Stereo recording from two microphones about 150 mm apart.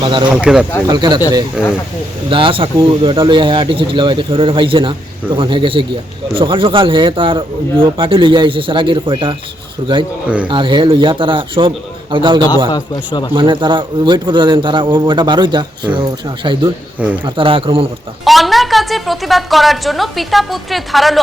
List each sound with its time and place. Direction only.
0.0 s speech: 30° right (ahead or behind)
0.3 s a woman's voice: 5° right (ahead or behind)
0.9 s speech: 30° right (ahead or behind)
1.6 s a woman's voice: 5° right (ahead or behind)
2.3 s speech: 35° right (ahead or behind)
10.2 s speech: 10° right (ahead or behind)
10.5 s speech: 35° right (ahead or behind)
12.7 s a man's voice: 30° left (ahead or behind)
13.3 s speech: 35° right (ahead or behind)
18.3 s a woman's voice: centre (ahead or behind)